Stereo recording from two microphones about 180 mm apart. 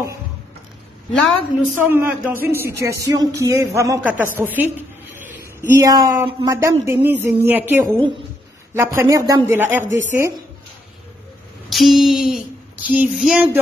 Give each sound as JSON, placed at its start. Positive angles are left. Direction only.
{"t": 1.1, "sound": "a woman's voice", "side_deg": 0}
{"t": 1.8, "sound": "a woman's voice", "side_deg": -10}
{"t": 11.7, "sound": "a sound", "side_deg": 0}